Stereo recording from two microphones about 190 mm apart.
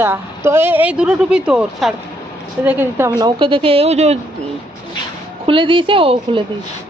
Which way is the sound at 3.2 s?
25° right (ahead or behind).